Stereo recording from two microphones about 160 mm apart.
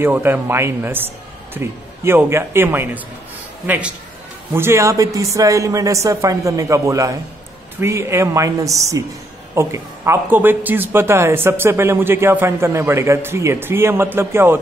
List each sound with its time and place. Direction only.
0.0 s speech: 15° right (ahead or behind)